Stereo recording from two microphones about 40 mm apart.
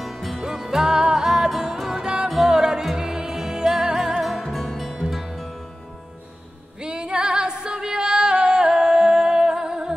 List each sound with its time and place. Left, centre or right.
0.0 s music: centre
4.5 s music: centre
4.7 s music: centre
6.8 s music: right